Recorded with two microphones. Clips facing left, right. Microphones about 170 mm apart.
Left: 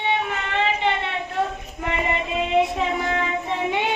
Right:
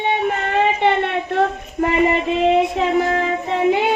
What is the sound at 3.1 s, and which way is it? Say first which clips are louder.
Child singing: right 5 dB; 35° right (ahead or behind).